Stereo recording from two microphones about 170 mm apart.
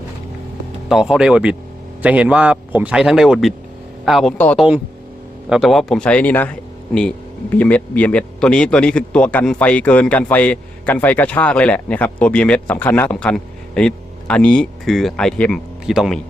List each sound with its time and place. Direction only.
0.9 s a man's voice: 5° right (ahead or behind)
4.5 s a man's voice: 5° right (ahead or behind)